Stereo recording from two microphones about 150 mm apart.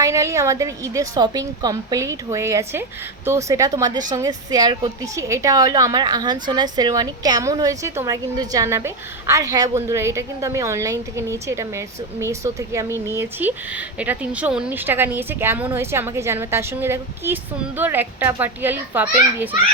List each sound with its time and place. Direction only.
0.0 s a woman's voice: 20° right (ahead or behind)